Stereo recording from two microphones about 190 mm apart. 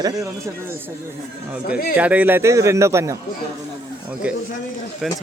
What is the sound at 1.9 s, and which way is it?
Speech, 10° right (ahead or behind).